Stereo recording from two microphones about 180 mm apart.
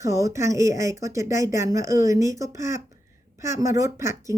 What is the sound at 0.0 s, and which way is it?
Speech, 15° right (ahead or behind).